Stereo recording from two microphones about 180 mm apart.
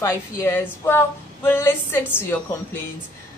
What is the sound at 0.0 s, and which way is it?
A woman's voice, 15° left (ahead or behind).